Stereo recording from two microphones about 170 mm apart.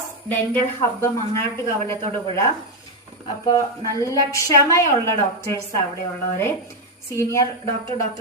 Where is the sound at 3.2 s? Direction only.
25° left (ahead or behind).